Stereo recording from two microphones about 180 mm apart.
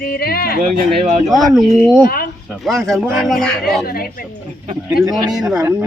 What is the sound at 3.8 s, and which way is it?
Speech, 55° left (ahead or behind).